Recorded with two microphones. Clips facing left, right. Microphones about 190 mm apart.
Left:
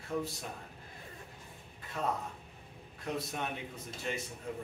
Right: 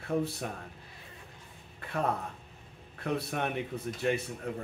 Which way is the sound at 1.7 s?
65° right (ahead or behind).